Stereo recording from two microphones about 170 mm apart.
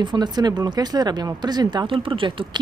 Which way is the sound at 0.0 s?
25° right (ahead or behind).